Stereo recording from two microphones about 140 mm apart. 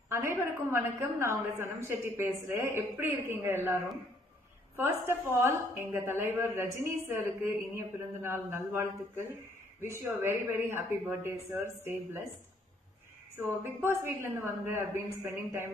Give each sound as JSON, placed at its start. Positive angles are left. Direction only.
{"t": 0.1, "sound": "a woman's voice", "side_deg": -20}
{"t": 4.7, "sound": "a woman's voice", "side_deg": -15}
{"t": 13.7, "sound": "a woman's voice", "side_deg": -15}